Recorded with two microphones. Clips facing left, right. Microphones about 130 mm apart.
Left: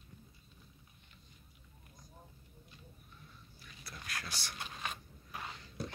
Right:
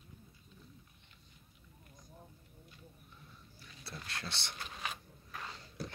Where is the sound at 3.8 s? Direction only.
30° right (ahead or behind).